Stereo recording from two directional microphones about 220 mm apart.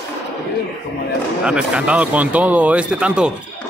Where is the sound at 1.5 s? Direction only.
5° right (ahead or behind).